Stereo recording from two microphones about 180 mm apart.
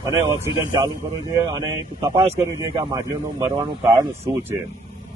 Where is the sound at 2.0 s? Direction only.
25° right (ahead or behind).